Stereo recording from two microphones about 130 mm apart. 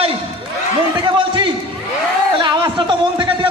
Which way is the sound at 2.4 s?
35° right (ahead or behind).